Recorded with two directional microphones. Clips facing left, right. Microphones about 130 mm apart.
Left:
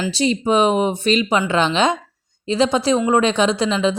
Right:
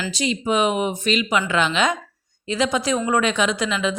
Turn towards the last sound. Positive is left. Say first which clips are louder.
# left 5 dB
turn(degrees=30)  # may be behind; listen again after turning